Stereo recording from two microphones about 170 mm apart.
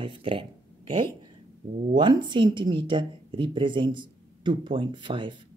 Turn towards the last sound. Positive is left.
turn(degrees=-30)  # may be behind; listen again after turning